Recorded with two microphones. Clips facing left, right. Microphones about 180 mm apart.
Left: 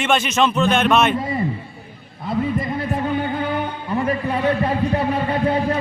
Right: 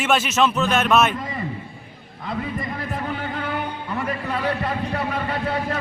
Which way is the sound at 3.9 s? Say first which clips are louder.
Left 6 dB; 20° left (ahead or behind).